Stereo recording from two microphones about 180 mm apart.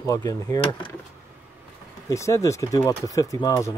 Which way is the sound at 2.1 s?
15° left (ahead or behind).